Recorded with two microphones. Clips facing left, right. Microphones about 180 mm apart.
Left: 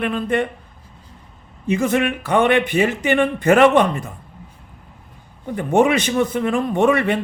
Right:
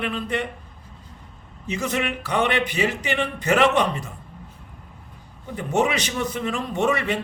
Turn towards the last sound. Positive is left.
turn(degrees=55)  # may be behind; listen again after turning